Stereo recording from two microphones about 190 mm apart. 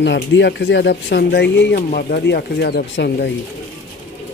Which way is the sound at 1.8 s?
45° left (ahead or behind).